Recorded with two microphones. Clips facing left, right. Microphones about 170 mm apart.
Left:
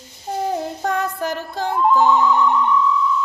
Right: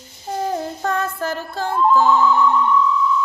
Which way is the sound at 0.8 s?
15° left (ahead or behind).